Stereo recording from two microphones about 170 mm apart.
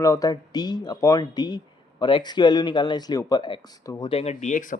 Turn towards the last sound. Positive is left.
turn(degrees=50)  # may be behind; listen again after turning